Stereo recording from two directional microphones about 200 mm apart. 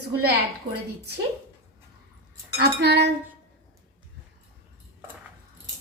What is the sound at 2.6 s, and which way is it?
Speech, 55° right (ahead or behind).